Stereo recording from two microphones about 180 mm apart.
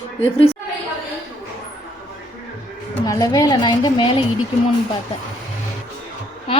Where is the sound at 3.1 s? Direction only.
20° left (ahead or behind).